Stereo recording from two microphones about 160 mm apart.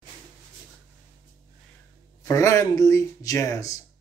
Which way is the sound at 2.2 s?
20° left (ahead or behind).